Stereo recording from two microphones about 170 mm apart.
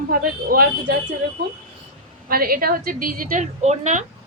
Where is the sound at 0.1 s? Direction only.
60° right (ahead or behind).